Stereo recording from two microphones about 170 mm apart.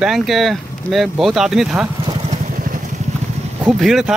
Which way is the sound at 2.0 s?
35° right (ahead or behind).